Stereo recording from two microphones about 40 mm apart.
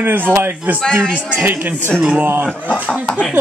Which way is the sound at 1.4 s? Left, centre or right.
Right.